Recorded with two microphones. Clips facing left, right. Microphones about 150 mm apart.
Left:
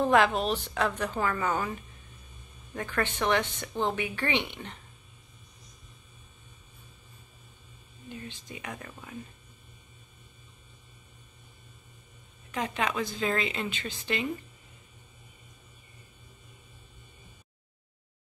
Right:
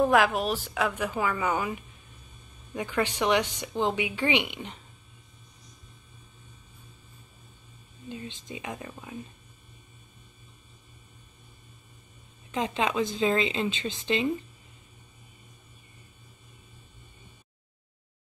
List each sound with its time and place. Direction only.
0.0 s a woman's voice: 5° right (ahead or behind)
8.1 s speech: 20° right (ahead or behind)
12.4 s speech: 20° right (ahead or behind)